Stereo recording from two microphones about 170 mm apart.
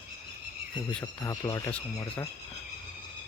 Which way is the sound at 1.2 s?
20° left (ahead or behind).